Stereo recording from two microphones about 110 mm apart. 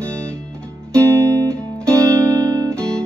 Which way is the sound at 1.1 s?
25° right (ahead or behind).